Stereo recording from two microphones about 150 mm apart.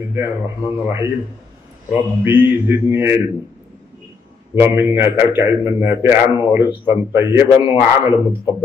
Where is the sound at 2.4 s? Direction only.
15° right (ahead or behind).